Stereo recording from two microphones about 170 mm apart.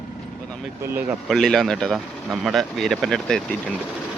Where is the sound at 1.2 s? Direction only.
Centre (ahead or behind).